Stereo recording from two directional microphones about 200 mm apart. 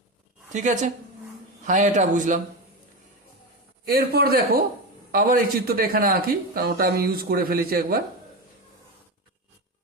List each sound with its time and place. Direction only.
0.5 s a man's voice: 40° right (ahead or behind)
3.8 s a man's voice: 50° right (ahead or behind)